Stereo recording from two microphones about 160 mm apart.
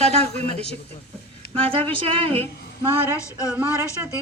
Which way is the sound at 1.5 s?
35° right (ahead or behind).